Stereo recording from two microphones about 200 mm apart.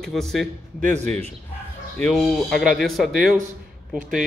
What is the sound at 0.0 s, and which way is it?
Speech, centre (ahead or behind).